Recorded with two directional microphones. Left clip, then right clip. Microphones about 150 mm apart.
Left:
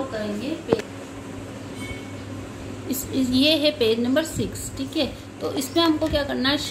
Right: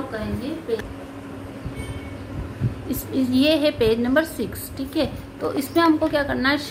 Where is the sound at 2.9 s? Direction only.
Centre (ahead or behind).